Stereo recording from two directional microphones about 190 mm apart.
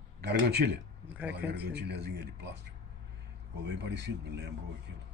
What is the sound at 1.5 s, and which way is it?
Speech, 60° right (ahead or behind).